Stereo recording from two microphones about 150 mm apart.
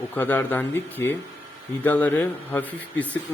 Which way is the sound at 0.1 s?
15° left (ahead or behind).